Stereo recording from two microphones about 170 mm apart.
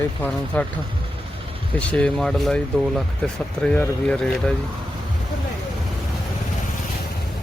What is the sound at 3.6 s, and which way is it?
Speech, 5° left (ahead or behind).